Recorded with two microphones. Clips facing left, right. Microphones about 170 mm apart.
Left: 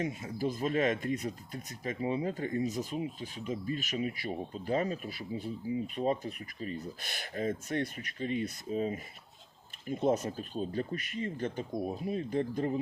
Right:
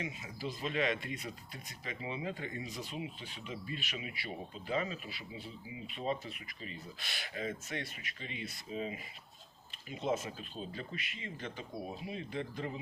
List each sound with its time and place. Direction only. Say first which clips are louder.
0.0 s speech: left 8 dB; 45° left (ahead or behind)